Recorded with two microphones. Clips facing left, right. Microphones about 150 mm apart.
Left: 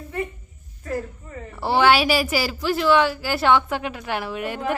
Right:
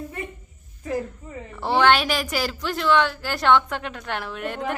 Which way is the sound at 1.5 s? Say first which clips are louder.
Left 1 dB; 5° left (ahead or behind).